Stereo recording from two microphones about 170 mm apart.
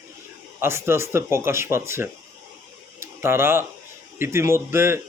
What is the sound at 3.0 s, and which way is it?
Bird, 15° right (ahead or behind).